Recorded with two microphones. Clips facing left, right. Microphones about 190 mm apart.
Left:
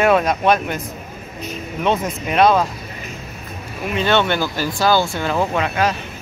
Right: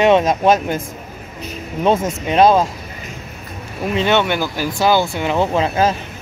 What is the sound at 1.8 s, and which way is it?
Speech, 30° right (ahead or behind).